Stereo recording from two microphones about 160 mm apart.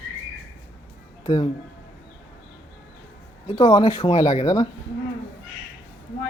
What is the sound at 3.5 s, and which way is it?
Speech, 25° left (ahead or behind).